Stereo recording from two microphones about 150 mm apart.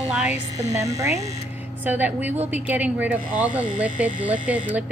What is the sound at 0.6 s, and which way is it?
Speech, 25° right (ahead or behind).